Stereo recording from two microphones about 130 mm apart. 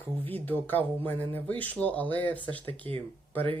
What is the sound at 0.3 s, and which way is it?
Speech, 15° left (ahead or behind).